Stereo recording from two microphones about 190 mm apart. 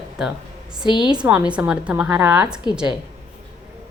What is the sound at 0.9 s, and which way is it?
Speech, 25° left (ahead or behind).